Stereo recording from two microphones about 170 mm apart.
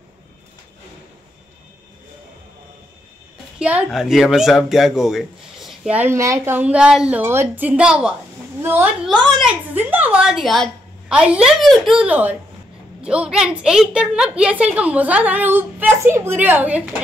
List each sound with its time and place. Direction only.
3.5 s a woman's voice: 5° right (ahead or behind)